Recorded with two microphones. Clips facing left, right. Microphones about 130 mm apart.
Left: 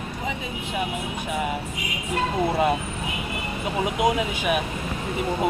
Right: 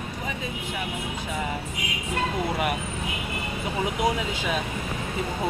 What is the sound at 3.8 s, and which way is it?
Speech, 20° left (ahead or behind).